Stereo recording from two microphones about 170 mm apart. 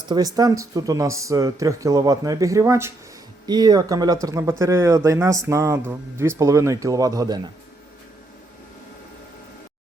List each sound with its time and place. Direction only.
0.0 s speech: 25° right (ahead or behind)